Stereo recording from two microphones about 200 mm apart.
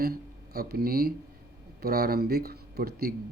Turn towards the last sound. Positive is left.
turn(degrees=-50)  # may be behind; listen again after turning